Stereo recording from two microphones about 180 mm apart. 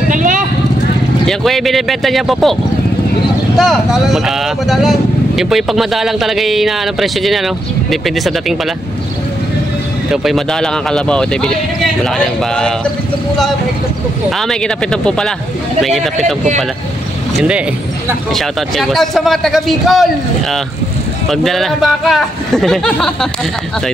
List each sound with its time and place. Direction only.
0.1 s vehicle: 45° right (ahead or behind)
1.2 s speech: centre (ahead or behind)
3.5 s speech: centre (ahead or behind)
10.1 s speech: centre (ahead or behind)
14.4 s speech: 5° left (ahead or behind)
17.5 s speech: 5° right (ahead or behind)
21.3 s speech: centre (ahead or behind)